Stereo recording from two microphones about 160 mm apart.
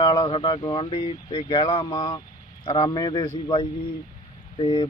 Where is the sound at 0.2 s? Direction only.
30° left (ahead or behind).